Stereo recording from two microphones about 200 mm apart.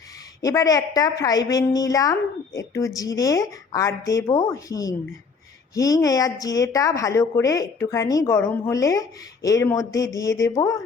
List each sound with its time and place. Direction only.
0.4 s a woman's voice: 15° left (ahead or behind)